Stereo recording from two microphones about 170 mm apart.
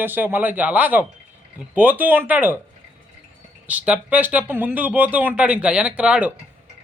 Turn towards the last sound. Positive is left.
turn(degrees=-5)  # may be behind; listen again after turning